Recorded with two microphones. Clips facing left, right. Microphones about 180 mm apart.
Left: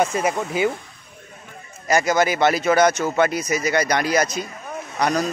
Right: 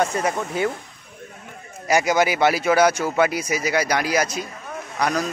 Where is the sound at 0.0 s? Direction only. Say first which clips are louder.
Left 1 dB; 5° left (ahead or behind).